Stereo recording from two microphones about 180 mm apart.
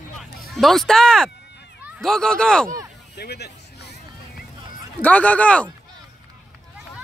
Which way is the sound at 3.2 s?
65° left (ahead or behind).